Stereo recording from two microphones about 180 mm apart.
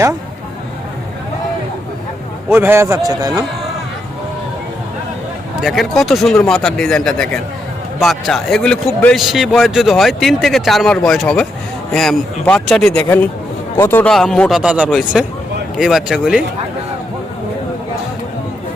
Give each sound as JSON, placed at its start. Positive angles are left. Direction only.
{"t": 2.5, "sound": "a man's voice", "side_deg": -15}
{"t": 5.6, "sound": "a man's voice", "side_deg": 0}